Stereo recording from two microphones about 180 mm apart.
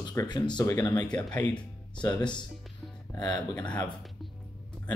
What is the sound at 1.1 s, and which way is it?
Speech, 10° left (ahead or behind).